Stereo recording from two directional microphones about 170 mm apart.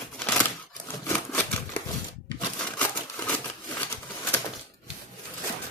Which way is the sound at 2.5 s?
5° left (ahead or behind).